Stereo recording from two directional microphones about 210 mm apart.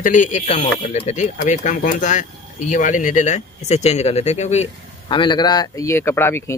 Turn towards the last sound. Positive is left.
turn(degrees=10)  # may be behind; listen again after turning